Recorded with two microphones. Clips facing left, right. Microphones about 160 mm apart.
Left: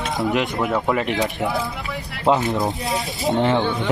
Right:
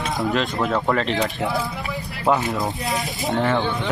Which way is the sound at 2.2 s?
20° left (ahead or behind).